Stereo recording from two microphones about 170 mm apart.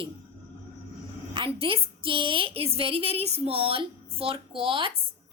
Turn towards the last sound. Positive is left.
turn(degrees=-30)  # may be behind; listen again after turning